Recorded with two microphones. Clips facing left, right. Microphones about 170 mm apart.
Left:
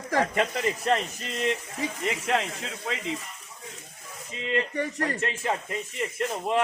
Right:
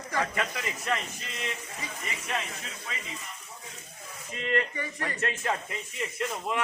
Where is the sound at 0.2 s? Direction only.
30° left (ahead or behind).